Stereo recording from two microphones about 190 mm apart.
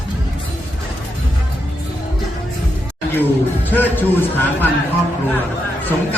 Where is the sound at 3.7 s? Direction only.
10° left (ahead or behind).